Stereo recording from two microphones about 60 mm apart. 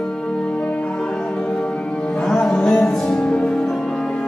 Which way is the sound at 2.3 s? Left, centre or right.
Centre.